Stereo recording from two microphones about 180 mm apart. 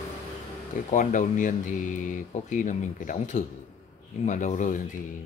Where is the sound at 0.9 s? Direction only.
45° left (ahead or behind).